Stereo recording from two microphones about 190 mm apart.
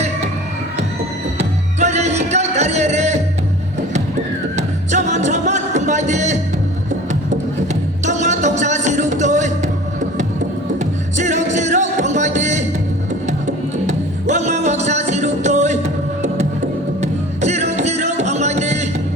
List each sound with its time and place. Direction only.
1.4 s music: 35° right (ahead or behind)
4.5 s music: 35° right (ahead or behind)
10.8 s music: 40° right (ahead or behind)
13.8 s music: 35° right (ahead or behind)